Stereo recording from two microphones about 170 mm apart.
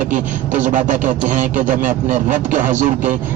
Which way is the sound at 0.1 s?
50° right (ahead or behind).